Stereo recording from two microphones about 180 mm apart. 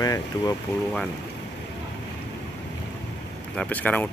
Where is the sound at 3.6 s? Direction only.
10° left (ahead or behind).